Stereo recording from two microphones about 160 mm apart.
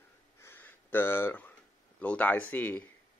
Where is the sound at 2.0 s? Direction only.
10° left (ahead or behind).